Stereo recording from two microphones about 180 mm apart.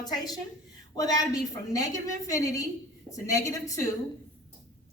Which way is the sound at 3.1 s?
15° left (ahead or behind).